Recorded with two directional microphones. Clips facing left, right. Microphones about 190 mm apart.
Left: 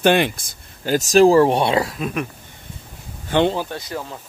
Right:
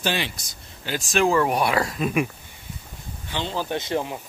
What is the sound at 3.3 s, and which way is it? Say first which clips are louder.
Speech: left 13 dB; 50° left (ahead or behind).